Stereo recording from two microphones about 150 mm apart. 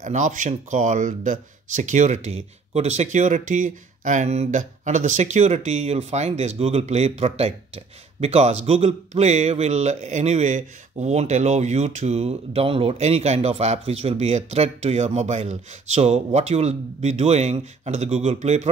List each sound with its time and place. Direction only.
0.0 s speech: 55° right (ahead or behind)